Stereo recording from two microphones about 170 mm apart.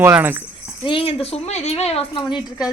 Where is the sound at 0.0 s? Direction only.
10° right (ahead or behind).